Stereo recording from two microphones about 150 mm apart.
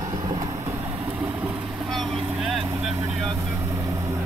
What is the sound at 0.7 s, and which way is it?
Vehicle, 10° right (ahead or behind).